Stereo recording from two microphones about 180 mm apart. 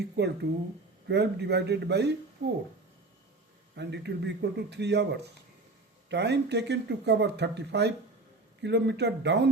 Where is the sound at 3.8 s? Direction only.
70° right (ahead or behind).